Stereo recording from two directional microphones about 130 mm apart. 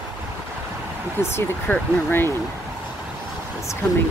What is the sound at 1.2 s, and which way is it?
Speech, 15° left (ahead or behind).